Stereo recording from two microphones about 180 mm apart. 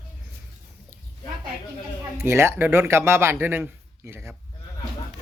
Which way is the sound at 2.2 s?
15° right (ahead or behind).